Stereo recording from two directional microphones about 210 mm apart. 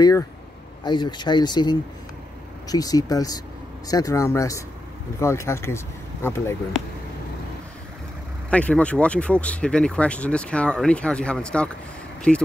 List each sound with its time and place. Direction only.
0.0 s speech: 15° left (ahead or behind)
8.5 s speech: 5° left (ahead or behind)